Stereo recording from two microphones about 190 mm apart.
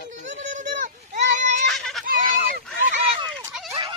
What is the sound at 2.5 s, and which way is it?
Goose, 45° right (ahead or behind).